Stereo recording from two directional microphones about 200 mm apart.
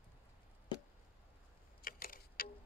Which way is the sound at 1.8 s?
45° left (ahead or behind).